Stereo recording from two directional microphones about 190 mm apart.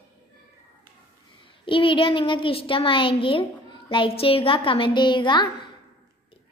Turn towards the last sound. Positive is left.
turn(degrees=25)  # may be behind; listen again after turning